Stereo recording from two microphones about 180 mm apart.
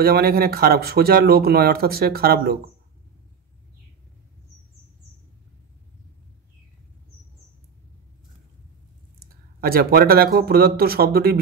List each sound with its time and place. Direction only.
0.0 s speech: 60° right (ahead or behind)
9.2 s speech: 55° right (ahead or behind)